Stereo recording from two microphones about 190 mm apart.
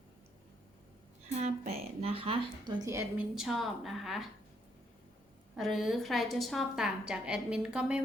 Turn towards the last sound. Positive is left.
turn(degrees=-5)  # may be behind; listen again after turning